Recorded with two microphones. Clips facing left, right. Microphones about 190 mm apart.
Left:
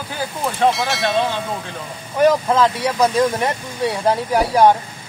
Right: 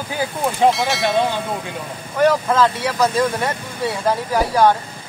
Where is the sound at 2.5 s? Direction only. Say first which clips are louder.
Left 1 dB; 20° left (ahead or behind).